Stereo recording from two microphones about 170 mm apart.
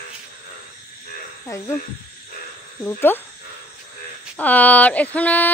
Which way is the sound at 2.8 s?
10° left (ahead or behind).